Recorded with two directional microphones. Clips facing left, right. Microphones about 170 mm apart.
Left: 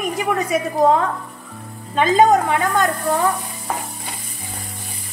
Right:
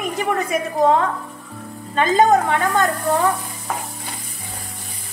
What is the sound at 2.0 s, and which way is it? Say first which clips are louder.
Speech: left 1 dB; 5° left (ahead or behind).